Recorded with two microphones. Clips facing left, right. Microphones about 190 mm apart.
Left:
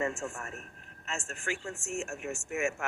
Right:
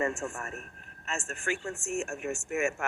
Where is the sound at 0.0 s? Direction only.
60° right (ahead or behind).